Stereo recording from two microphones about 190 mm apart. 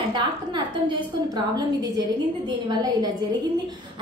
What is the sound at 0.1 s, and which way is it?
A woman's voice, 25° right (ahead or behind).